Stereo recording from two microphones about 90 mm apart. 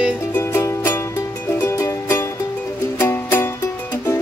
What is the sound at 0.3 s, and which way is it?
Music, 25° left (ahead or behind).